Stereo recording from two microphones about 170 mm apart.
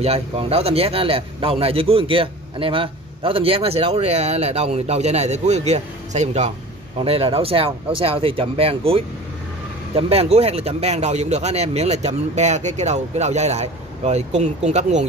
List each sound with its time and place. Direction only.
0.0 s speech: 35° right (ahead or behind)